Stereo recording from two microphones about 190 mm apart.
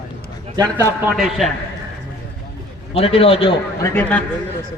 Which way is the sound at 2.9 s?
30° left (ahead or behind).